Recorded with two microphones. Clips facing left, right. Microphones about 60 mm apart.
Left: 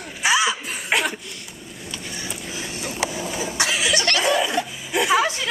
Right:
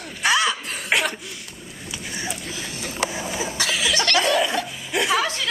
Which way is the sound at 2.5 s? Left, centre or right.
Centre.